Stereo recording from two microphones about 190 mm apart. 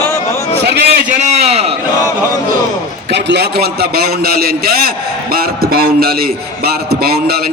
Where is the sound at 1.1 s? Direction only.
35° right (ahead or behind).